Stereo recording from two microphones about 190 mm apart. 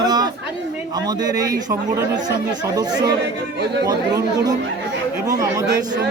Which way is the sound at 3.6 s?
60° right (ahead or behind).